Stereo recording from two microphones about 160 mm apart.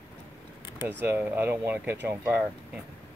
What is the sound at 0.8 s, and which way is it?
Speech, 15° right (ahead or behind).